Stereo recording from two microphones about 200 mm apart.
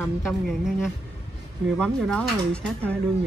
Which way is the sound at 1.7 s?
5° left (ahead or behind).